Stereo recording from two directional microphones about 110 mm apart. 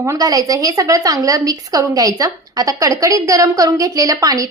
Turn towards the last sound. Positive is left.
turn(degrees=-35)  # may be behind; listen again after turning